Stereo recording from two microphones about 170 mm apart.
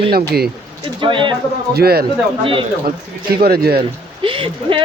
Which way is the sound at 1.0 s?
30° right (ahead or behind).